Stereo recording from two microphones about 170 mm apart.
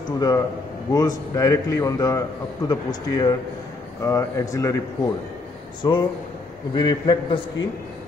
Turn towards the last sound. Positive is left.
turn(degrees=25)  # may be behind; listen again after turning